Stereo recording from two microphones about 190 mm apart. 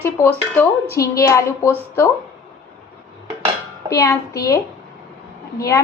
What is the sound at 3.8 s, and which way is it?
Speech, 20° left (ahead or behind).